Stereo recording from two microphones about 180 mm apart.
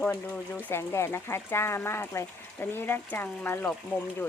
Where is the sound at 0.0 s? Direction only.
10° left (ahead or behind).